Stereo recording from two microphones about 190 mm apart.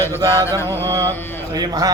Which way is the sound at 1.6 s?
20° right (ahead or behind).